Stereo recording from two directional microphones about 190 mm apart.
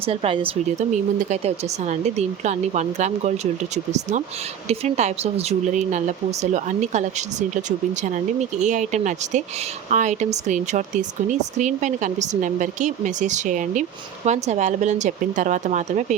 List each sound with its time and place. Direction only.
0.0 s speech: 30° right (ahead or behind)